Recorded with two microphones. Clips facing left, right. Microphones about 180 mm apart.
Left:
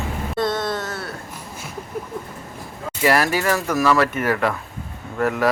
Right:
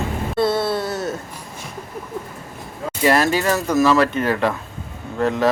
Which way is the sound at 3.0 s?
20° right (ahead or behind).